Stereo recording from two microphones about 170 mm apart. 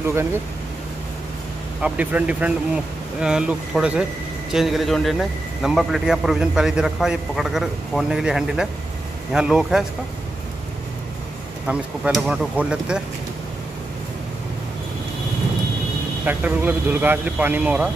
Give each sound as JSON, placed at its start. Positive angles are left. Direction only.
{"t": 0.1, "sound": "speech", "side_deg": -15}
{"t": 1.8, "sound": "a man's voice", "side_deg": -10}
{"t": 11.6, "sound": "speech", "side_deg": -5}
{"t": 16.3, "sound": "speech", "side_deg": -10}